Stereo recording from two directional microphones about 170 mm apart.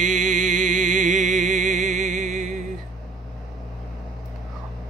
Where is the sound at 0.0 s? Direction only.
45° right (ahead or behind).